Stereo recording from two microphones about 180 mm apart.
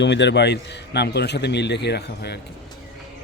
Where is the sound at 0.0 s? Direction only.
80° left.